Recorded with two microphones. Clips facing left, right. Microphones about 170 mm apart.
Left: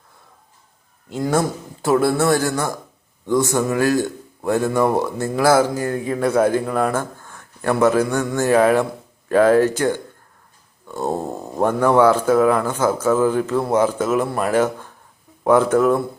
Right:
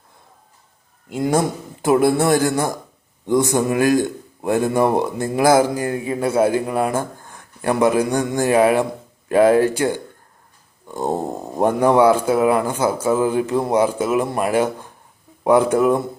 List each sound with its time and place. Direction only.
1.2 s a man's voice: 20° right (ahead or behind)